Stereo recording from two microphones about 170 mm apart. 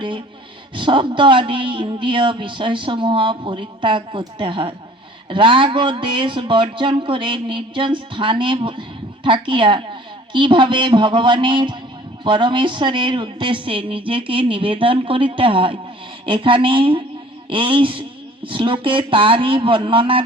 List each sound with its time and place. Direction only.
0.8 s speech: 30° right (ahead or behind)